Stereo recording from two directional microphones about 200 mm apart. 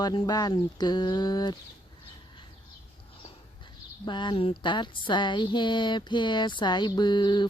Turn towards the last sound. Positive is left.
turn(degrees=20)  # may be behind; listen again after turning